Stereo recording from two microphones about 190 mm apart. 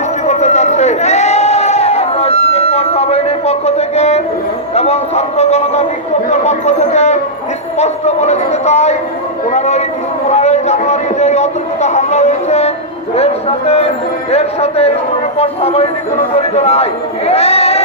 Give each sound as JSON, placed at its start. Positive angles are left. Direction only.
{"t": 0.3, "sound": "crowd", "side_deg": 35}
{"t": 4.7, "sound": "a man's voice", "side_deg": 35}
{"t": 6.3, "sound": "a sound", "side_deg": 35}
{"t": 7.8, "sound": "a man's voice", "side_deg": 35}